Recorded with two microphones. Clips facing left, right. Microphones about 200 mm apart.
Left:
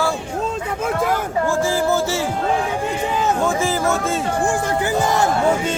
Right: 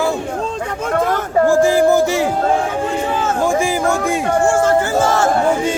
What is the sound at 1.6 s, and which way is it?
Music, 15° right (ahead or behind).